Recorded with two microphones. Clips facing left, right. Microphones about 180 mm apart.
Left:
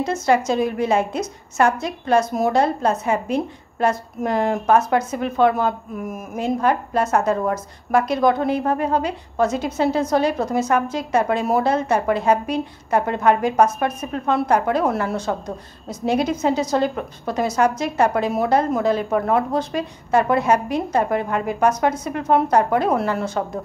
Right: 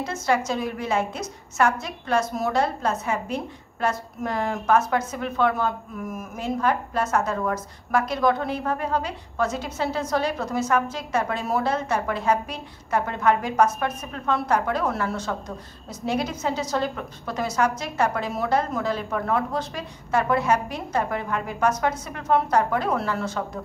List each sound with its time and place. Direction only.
0.0 s a woman's voice: 20° left (ahead or behind)
7.0 s a woman's voice: 30° left (ahead or behind)
7.9 s a woman's voice: 15° left (ahead or behind)